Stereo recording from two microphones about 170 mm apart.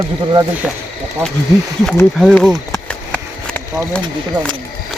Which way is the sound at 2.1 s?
Centre (ahead or behind).